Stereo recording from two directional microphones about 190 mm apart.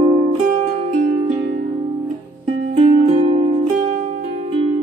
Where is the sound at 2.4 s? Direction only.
30° right (ahead or behind).